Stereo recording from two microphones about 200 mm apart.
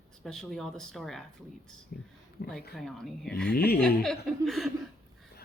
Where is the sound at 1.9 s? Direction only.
55° left (ahead or behind).